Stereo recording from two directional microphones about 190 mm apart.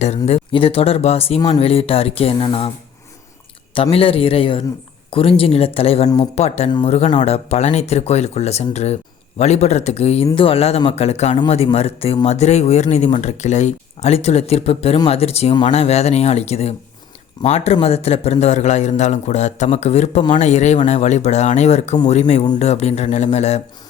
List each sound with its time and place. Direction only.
0.3 s a man's voice: 30° left (ahead or behind)
3.8 s a man's voice: 30° left (ahead or behind)